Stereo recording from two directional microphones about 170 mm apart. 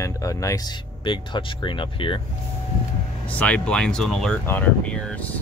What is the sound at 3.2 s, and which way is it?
Speech, 10° left (ahead or behind).